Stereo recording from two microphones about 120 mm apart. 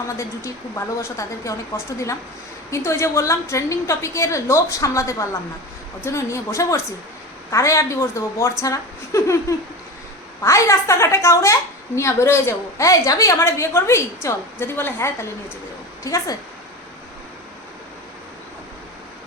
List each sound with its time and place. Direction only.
0.2 s a woman's voice: 25° left (ahead or behind)